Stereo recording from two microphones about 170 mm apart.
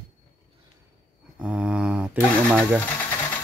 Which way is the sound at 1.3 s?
5° right (ahead or behind).